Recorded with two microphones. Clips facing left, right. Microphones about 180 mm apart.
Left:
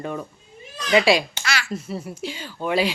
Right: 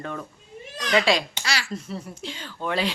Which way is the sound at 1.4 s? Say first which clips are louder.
Left 2 dB; 35° right (ahead or behind).